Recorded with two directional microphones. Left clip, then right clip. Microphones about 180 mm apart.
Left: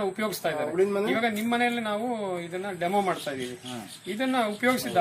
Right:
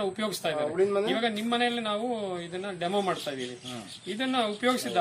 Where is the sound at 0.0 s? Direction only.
Centre (ahead or behind).